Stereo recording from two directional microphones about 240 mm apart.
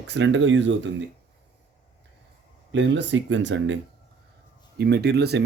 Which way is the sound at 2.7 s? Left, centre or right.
Right.